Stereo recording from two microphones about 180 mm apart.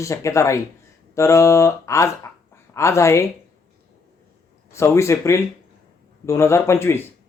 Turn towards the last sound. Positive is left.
turn(degrees=15)  # may be behind; listen again after turning